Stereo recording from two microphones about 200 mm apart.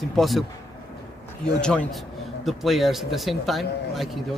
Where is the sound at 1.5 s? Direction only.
5° left (ahead or behind).